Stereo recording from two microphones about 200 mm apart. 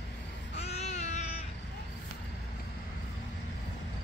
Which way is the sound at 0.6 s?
35° left (ahead or behind).